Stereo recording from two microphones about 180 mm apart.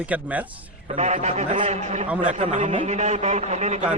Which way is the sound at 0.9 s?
40° right (ahead or behind).